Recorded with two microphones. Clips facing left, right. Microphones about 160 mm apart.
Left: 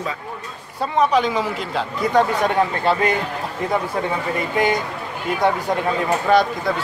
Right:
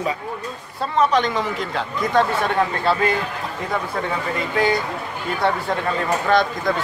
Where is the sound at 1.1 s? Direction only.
5° left (ahead or behind).